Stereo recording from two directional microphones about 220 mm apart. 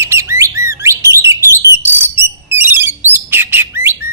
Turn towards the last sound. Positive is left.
turn(degrees=-10)  # may be behind; listen again after turning